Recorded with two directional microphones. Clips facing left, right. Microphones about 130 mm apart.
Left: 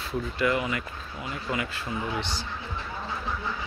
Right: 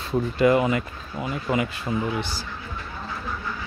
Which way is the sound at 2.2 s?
10° right (ahead or behind).